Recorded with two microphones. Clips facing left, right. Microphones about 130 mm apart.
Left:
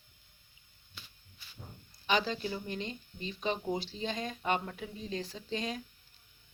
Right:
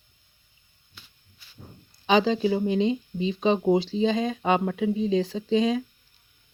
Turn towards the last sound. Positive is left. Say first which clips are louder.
# right 14 dB
turn(degrees=-90)